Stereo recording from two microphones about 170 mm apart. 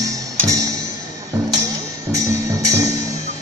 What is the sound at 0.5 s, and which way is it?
Music, 20° right (ahead or behind).